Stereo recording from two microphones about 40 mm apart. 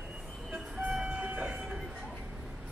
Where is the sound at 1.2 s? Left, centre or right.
Right.